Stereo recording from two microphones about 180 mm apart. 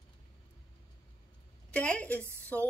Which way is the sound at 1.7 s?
5° left (ahead or behind).